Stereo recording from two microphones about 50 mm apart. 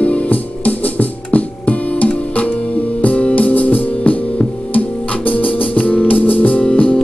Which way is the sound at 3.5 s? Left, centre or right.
Left.